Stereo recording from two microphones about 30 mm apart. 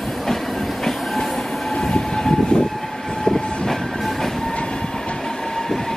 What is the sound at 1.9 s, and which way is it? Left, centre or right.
Train, left.